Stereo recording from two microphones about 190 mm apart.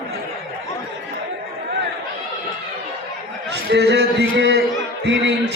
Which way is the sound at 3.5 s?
65° right (ahead or behind).